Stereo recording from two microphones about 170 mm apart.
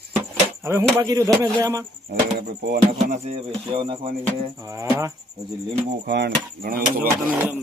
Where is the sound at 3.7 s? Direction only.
30° right (ahead or behind).